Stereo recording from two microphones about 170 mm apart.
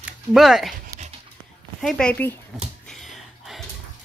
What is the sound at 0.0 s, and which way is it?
Speech, 5° right (ahead or behind).